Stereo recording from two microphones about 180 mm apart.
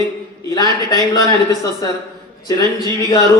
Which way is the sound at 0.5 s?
20° left (ahead or behind).